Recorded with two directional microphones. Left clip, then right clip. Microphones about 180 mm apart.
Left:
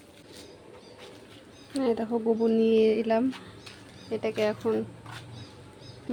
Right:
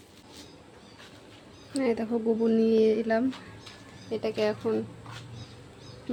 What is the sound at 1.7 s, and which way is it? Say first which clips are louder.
Speech: left 1 dB; centre (ahead or behind).